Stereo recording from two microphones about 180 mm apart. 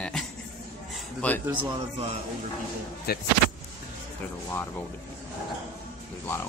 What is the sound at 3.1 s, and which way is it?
Speech, 60° left (ahead or behind).